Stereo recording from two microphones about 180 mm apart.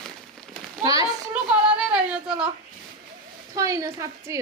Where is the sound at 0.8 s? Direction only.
20° right (ahead or behind).